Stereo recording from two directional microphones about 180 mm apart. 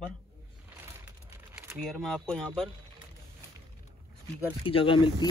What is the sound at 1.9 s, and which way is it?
Speech, centre (ahead or behind).